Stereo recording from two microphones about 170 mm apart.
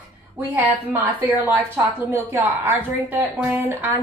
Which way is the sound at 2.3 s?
10° right (ahead or behind).